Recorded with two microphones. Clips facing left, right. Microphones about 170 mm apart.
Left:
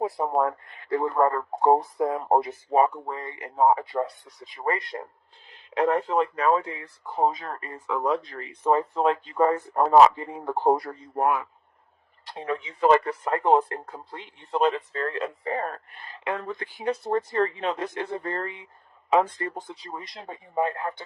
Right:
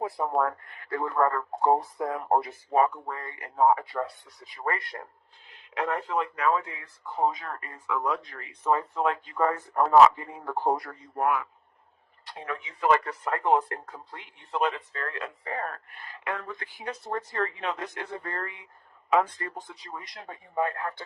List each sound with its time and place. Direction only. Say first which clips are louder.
0.0 s speech: left 3 dB; 20° left (ahead or behind)
5.7 s speech: left 6 dB; 30° left (ahead or behind)